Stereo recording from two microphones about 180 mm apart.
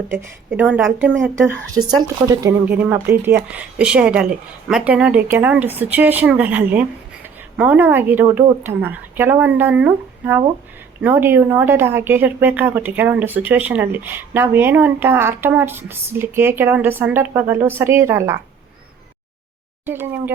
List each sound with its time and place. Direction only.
0.5 s a woman's voice: 5° right (ahead or behind)
1.4 s a woman's voice: 15° right (ahead or behind)
19.8 s a woman's voice: 10° right (ahead or behind)